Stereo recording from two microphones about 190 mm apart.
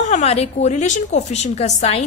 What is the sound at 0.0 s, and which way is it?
A woman's voice, 35° left (ahead or behind).